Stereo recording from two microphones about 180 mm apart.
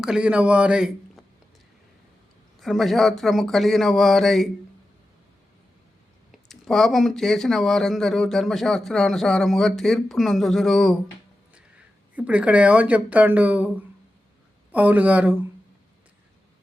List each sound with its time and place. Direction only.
0.0 s speech: 5° right (ahead or behind)
2.6 s speech: centre (ahead or behind)
6.5 s speech: centre (ahead or behind)
12.1 s speech: 5° right (ahead or behind)